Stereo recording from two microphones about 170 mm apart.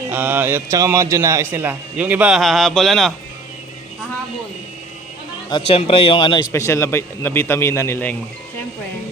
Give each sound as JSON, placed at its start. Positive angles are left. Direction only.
{"t": 0.1, "sound": "a man's voice", "side_deg": -10}
{"t": 5.5, "sound": "speech", "side_deg": 30}